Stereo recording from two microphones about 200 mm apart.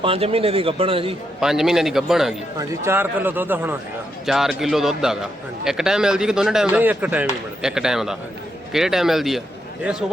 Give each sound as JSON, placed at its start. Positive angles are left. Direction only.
{"t": 0.0, "sound": "a man's voice", "side_deg": -30}
{"t": 1.4, "sound": "a man's voice", "side_deg": 0}
{"t": 2.6, "sound": "a man's voice", "side_deg": -10}